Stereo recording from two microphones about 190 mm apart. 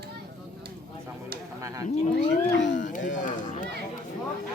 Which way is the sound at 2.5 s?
75° left (ahead or behind).